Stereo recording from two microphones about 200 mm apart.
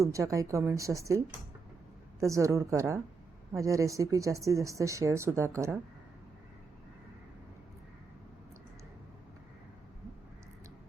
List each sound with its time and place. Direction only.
0.0 s a woman's voice: 15° right (ahead or behind)
2.2 s a woman's voice: 15° right (ahead or behind)